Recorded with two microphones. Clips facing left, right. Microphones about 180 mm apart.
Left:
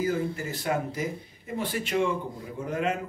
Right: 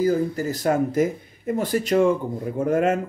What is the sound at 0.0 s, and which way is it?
Speech, 40° right (ahead or behind).